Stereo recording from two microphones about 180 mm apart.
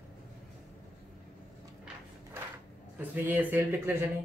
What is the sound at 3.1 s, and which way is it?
Speech, 10° right (ahead or behind).